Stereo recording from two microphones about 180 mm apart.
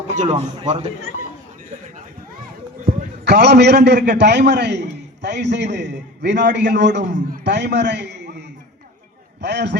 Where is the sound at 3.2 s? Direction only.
65° right (ahead or behind).